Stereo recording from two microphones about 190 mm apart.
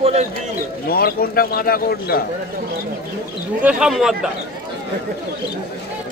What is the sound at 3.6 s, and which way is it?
Speech, 5° right (ahead or behind).